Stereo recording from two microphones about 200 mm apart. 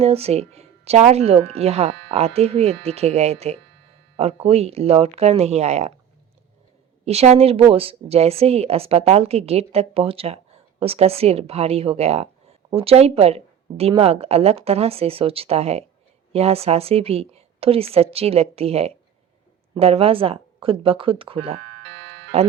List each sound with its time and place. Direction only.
0.0 s a woman's voice: 30° right (ahead or behind)
7.0 s a woman's voice: 30° right (ahead or behind)